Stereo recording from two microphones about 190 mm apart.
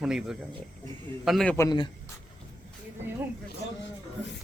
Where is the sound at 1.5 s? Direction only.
20° left (ahead or behind).